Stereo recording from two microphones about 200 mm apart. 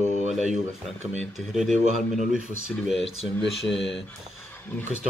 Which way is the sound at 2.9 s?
30° left (ahead or behind).